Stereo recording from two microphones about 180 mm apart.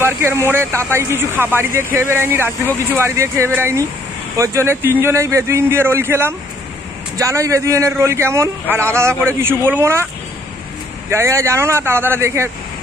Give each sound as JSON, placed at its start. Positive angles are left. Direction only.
{"t": 0.0, "sound": "a man's voice", "side_deg": -15}
{"t": 11.1, "sound": "a man's voice", "side_deg": -15}